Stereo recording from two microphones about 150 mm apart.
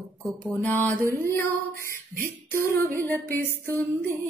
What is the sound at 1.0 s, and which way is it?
Music, 20° right (ahead or behind).